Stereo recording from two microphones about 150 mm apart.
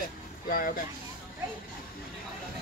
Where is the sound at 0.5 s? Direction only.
75° left (ahead or behind).